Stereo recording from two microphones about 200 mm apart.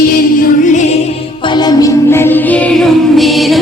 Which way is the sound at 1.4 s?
20° left (ahead or behind).